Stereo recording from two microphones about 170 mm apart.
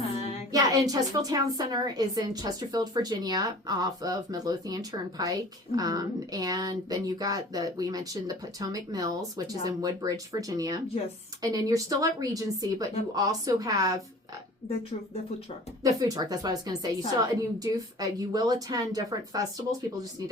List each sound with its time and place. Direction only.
0.5 s a woman's voice: 20° right (ahead or behind)
15.8 s a woman's voice: 20° right (ahead or behind)